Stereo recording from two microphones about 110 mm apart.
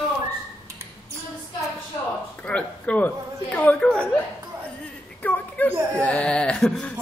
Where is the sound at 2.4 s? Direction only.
10° left (ahead or behind).